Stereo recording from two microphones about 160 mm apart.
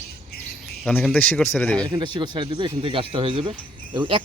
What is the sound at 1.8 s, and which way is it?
Speech, 30° right (ahead or behind).